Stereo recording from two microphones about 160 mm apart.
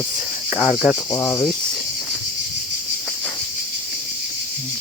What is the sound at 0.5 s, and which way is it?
Speech, 5° left (ahead or behind).